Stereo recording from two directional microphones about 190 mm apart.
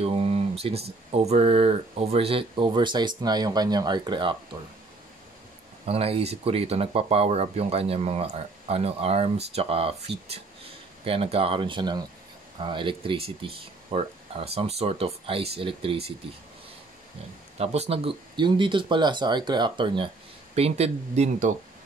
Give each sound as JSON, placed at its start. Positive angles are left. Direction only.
{"t": 0.0, "sound": "a sound", "side_deg": -30}
{"t": 1.1, "sound": "speech", "side_deg": -35}
{"t": 5.9, "sound": "speech", "side_deg": -30}
{"t": 17.6, "sound": "speech", "side_deg": -35}